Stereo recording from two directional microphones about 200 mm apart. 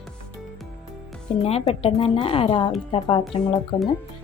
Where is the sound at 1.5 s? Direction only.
30° left (ahead or behind).